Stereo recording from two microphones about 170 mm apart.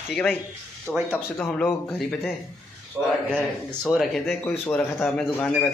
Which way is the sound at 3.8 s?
Centre (ahead or behind).